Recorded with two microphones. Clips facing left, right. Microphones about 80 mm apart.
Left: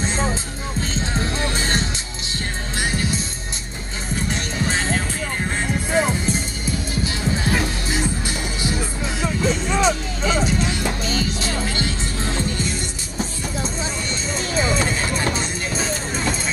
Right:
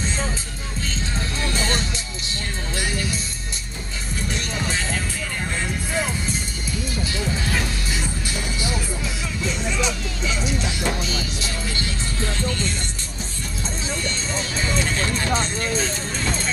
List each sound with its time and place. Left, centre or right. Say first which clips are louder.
0.0 s music: left 4 dB; left
4.3 s music: left 2 dB; left
14.9 s music: left 1 dB; centre